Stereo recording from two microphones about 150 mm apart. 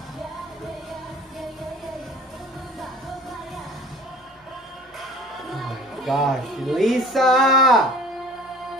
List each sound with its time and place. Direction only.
5.5 s speech: centre (ahead or behind)